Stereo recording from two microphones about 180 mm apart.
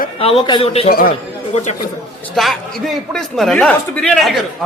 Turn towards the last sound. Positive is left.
turn(degrees=0)  # may be behind; listen again after turning